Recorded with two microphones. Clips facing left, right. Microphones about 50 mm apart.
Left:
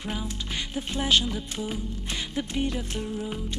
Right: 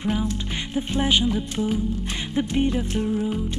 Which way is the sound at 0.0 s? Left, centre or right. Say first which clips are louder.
Right 8 dB; centre.